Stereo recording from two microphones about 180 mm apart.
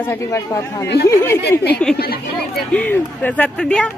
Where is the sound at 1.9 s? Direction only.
60° left (ahead or behind).